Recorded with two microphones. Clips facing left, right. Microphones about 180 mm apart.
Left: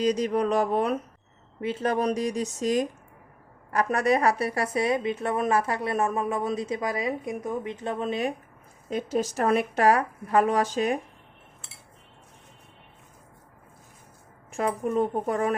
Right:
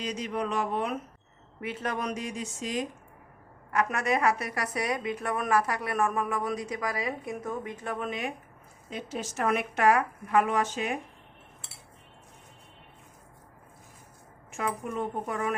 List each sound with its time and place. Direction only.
0.0 s a woman's voice: 40° left (ahead or behind)
8.9 s speech: 45° left (ahead or behind)
14.5 s speech: 35° left (ahead or behind)